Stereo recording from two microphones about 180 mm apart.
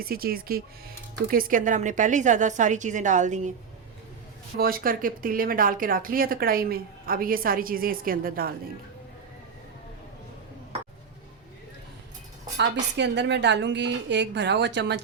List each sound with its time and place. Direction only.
0.0 s speech: 55° right (ahead or behind)
4.5 s speech: 55° right (ahead or behind)
12.5 s a woman's voice: 75° right (ahead or behind)